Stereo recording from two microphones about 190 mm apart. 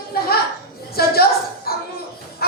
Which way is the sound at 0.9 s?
55° left (ahead or behind).